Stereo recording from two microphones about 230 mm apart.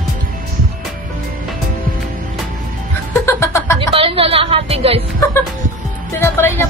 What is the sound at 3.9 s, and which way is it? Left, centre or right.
A woman's voice, right.